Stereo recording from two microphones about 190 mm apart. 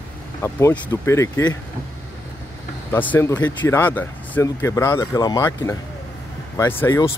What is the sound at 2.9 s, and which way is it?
Speech, 10° left (ahead or behind).